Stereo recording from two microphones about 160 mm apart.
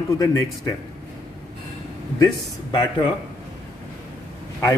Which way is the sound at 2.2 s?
25° left (ahead or behind).